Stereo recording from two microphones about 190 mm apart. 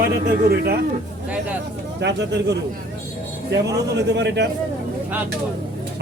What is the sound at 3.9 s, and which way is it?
Speech, 65° right (ahead or behind).